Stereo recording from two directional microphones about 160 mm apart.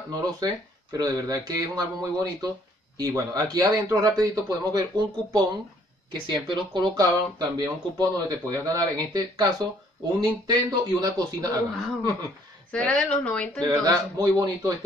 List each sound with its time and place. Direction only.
0.1 s speech: 25° right (ahead or behind)
12.7 s speech: 5° left (ahead or behind)
13.7 s speech: 25° right (ahead or behind)